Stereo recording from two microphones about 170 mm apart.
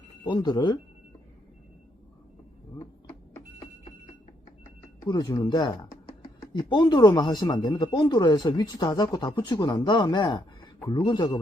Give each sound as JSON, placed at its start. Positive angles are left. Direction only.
{"t": 0.3, "sound": "speech", "side_deg": 25}
{"t": 5.0, "sound": "speech", "side_deg": 25}